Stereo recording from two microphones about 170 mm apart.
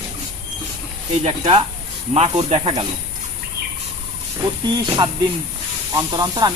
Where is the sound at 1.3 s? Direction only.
40° right (ahead or behind).